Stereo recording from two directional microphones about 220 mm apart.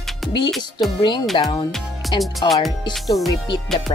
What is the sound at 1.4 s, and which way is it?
Speech, 20° left (ahead or behind).